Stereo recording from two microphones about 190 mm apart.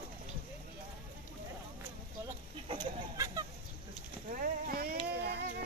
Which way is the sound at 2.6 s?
20° right (ahead or behind).